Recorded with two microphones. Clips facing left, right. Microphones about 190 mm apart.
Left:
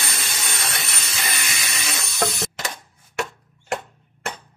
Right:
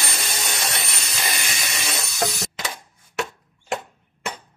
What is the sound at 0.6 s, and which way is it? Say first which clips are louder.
Jet engine: right 1 dB; centre (ahead or behind).